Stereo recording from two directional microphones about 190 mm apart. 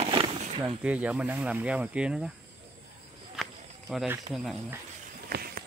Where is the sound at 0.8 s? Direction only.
5° right (ahead or behind).